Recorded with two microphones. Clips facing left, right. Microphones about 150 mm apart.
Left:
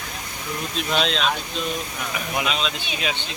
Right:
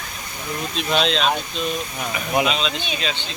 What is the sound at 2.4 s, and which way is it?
Speech, centre (ahead or behind).